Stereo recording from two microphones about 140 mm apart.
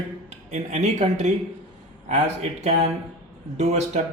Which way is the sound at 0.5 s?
55° right (ahead or behind).